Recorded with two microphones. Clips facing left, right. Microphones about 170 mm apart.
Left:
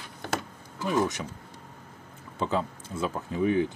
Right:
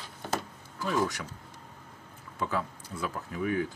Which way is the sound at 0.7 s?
20° left (ahead or behind).